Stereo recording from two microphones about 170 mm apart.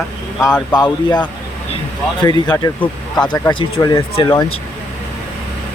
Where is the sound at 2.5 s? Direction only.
20° left (ahead or behind).